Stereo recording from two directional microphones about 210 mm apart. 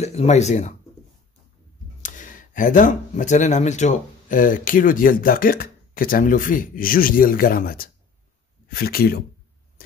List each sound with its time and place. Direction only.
0.0 s speech: 30° left (ahead or behind)
2.0 s speech: 40° left (ahead or behind)